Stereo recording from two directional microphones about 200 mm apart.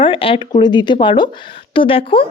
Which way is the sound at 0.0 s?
25° left (ahead or behind).